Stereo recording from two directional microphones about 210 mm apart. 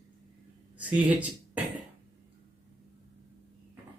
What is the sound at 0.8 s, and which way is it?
Speech, 5° right (ahead or behind).